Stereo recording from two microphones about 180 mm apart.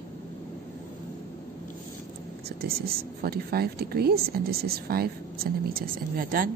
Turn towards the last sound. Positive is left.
turn(degrees=-50)  # may be behind; listen again after turning